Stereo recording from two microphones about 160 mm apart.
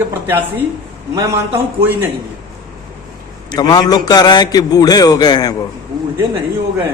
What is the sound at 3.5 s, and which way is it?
A man's voice, 25° left (ahead or behind).